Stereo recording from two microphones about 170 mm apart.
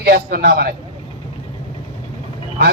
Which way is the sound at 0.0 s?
65° right (ahead or behind).